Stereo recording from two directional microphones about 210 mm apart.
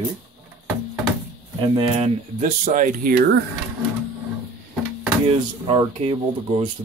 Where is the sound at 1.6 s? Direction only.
25° right (ahead or behind).